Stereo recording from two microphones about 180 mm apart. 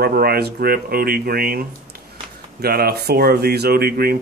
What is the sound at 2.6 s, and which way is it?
Speech, 60° right (ahead or behind).